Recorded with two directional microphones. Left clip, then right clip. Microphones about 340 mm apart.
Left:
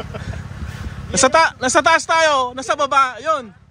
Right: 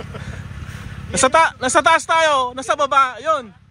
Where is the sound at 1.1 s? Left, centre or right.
Centre.